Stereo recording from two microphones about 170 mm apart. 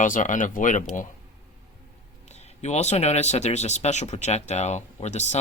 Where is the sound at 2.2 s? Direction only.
40° left (ahead or behind).